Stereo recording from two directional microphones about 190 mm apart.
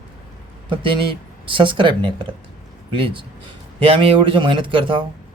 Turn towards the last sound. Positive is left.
turn(degrees=-25)  # may be behind; listen again after turning